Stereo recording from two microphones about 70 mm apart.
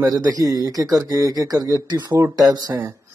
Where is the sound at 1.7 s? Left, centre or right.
Right.